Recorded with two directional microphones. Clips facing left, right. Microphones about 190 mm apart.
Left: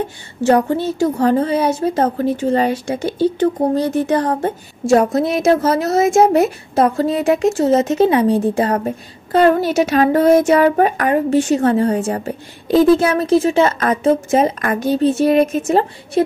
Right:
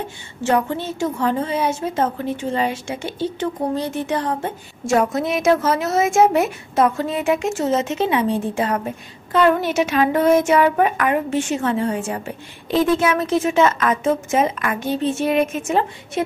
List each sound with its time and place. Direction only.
0.4 s a woman's voice: 40° left (ahead or behind)